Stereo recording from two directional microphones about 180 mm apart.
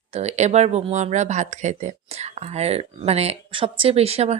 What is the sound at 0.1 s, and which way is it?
Speech, 40° right (ahead or behind).